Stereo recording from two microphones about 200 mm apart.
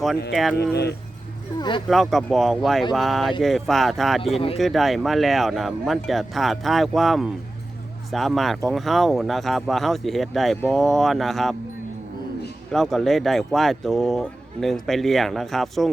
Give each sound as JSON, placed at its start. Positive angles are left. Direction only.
{"t": 0.5, "sound": "speech", "side_deg": 55}
{"t": 1.5, "sound": "speech", "side_deg": 20}
{"t": 1.9, "sound": "speech", "side_deg": 0}
{"t": 12.7, "sound": "speech", "side_deg": 0}